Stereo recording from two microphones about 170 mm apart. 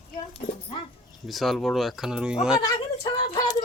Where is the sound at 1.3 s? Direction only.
Centre (ahead or behind).